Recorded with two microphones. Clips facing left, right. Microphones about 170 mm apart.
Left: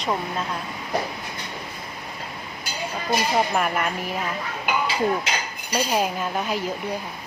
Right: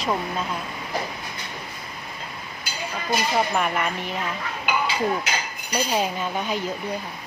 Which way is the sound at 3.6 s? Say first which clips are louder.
Left 1 dB; 5° left (ahead or behind).